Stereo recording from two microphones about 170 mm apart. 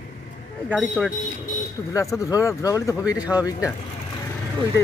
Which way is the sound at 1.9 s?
20° left (ahead or behind).